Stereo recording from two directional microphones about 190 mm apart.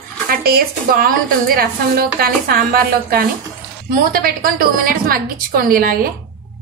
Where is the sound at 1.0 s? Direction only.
50° right (ahead or behind).